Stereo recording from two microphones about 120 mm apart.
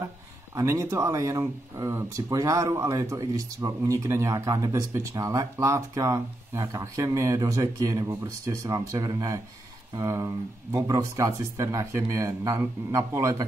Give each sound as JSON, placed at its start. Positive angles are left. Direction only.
{"t": 0.6, "sound": "speech", "side_deg": -25}